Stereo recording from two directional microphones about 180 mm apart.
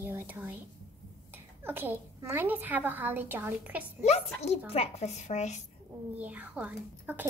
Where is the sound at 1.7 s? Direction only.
10° right (ahead or behind).